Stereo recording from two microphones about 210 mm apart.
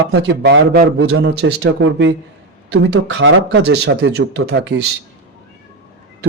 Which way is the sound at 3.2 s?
60° right (ahead or behind).